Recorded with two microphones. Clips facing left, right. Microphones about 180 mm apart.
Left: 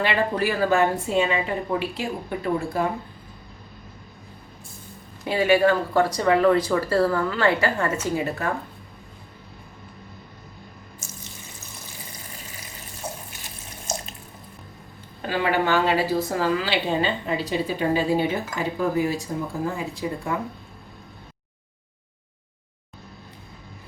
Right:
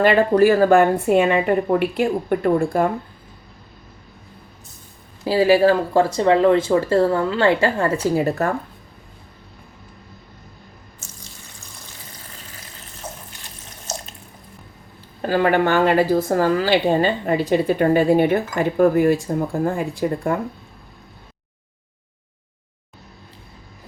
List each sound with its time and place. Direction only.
0.0 s a woman's voice: 45° right (ahead or behind)
5.2 s speech: 30° right (ahead or behind)
12.3 s water tap: 10° left (ahead or behind)
15.2 s a woman's voice: 45° right (ahead or behind)